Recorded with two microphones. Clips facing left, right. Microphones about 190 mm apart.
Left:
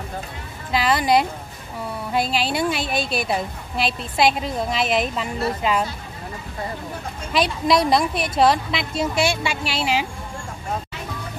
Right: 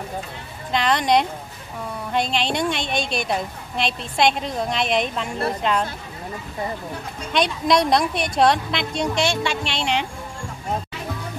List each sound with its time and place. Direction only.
0.7 s a woman's voice: 5° left (ahead or behind)
7.3 s a woman's voice: centre (ahead or behind)